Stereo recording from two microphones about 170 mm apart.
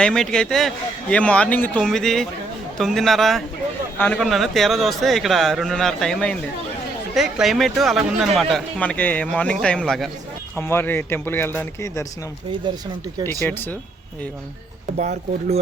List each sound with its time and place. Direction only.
0.0 s speech: 5° left (ahead or behind)
12.7 s speech: 25° right (ahead or behind)
13.2 s speech: 10° left (ahead or behind)
14.9 s speech: 45° right (ahead or behind)